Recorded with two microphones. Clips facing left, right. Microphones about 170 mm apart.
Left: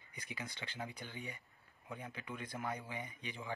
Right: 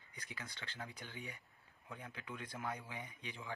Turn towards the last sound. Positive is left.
turn(degrees=0)  # may be behind; listen again after turning